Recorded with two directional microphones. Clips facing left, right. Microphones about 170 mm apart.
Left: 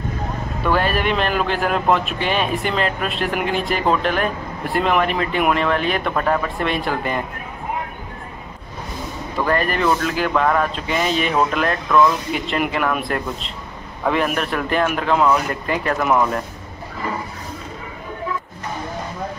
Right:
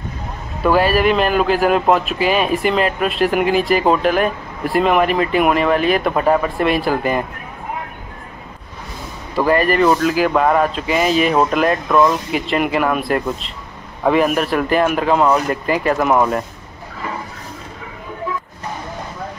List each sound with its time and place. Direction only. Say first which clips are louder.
0.7 s speech: right 5 dB; 5° right (ahead or behind)
9.5 s speech: right 5 dB; 5° right (ahead or behind)
10.9 s speech: right 6 dB; 5° right (ahead or behind)